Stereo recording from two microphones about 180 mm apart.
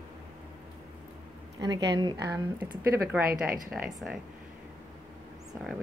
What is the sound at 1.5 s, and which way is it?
A woman's voice, 20° right (ahead or behind).